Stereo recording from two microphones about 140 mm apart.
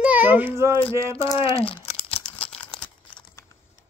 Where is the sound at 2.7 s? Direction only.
40° left (ahead or behind).